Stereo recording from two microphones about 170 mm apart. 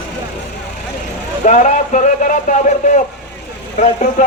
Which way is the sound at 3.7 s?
45° left (ahead or behind).